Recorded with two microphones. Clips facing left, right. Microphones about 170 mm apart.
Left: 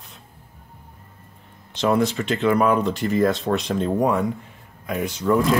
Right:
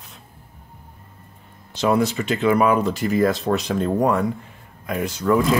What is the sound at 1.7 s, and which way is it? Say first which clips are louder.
Speech: right 1 dB; 5° right (ahead or behind).